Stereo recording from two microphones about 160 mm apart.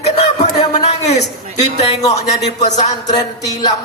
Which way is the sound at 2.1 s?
45° left (ahead or behind).